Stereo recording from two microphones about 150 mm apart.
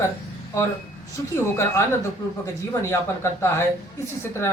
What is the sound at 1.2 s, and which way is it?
Speech, 20° left (ahead or behind).